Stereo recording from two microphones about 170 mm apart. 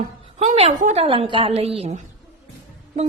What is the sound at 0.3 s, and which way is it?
A woman's voice, 40° right (ahead or behind).